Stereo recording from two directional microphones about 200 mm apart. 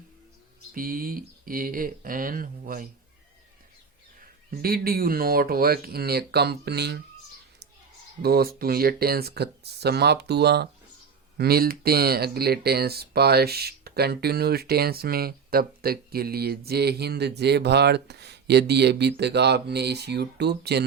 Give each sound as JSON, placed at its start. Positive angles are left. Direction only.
{"t": 0.7, "sound": "speech", "side_deg": -45}
{"t": 4.5, "sound": "speech", "side_deg": -50}
{"t": 8.2, "sound": "speech", "side_deg": -50}